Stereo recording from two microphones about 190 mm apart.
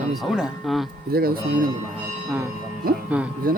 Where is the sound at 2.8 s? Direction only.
50° right (ahead or behind).